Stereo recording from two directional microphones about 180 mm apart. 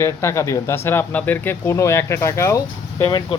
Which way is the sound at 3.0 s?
25° left (ahead or behind).